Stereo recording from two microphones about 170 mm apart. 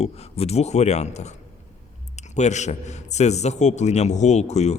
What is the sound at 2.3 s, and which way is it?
Speech, 45° left (ahead or behind).